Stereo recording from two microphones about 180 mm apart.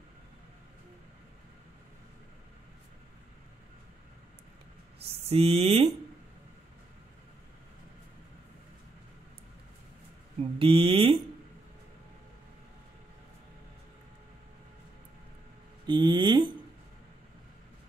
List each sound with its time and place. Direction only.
5.3 s speech: 35° right (ahead or behind)
10.6 s speech: 30° right (ahead or behind)
15.9 s speech: 25° right (ahead or behind)